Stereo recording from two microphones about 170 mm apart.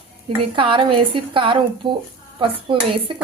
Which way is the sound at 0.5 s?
30° right (ahead or behind).